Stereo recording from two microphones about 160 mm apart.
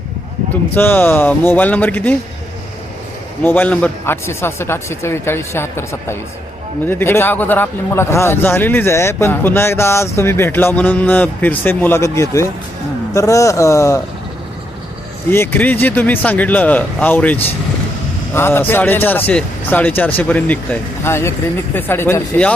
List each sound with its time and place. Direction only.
0.7 s speech: 10° left (ahead or behind)
3.4 s speech: 10° left (ahead or behind)
15.3 s speech: 15° left (ahead or behind)